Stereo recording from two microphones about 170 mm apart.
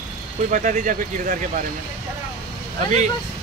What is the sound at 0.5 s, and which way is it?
Speech, 50° right (ahead or behind).